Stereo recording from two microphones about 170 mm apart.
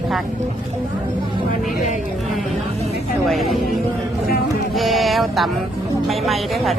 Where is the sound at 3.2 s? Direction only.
Centre (ahead or behind).